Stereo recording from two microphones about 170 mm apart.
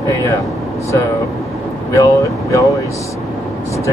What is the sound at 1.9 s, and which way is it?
Speech, 20° left (ahead or behind).